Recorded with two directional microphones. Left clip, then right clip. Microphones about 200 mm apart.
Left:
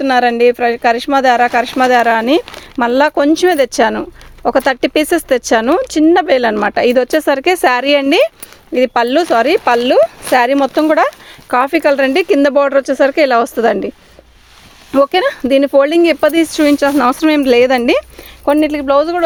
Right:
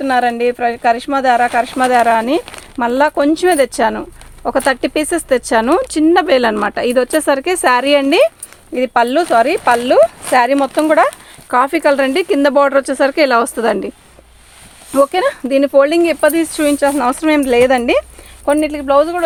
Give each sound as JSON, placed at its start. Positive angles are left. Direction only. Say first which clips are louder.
{"t": 0.0, "sound": "speech", "louder": "left 3 dB", "side_deg": 45}
{"t": 11.5, "sound": "speech", "louder": "left 1 dB", "side_deg": 30}
{"t": 14.9, "sound": "speech", "louder": "left 1 dB", "side_deg": 40}